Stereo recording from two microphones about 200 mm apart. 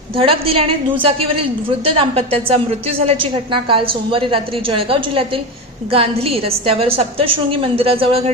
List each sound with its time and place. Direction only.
0.2 s a woman's voice: 30° right (ahead or behind)